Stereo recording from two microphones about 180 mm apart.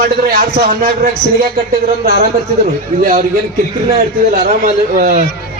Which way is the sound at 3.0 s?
50° right (ahead or behind).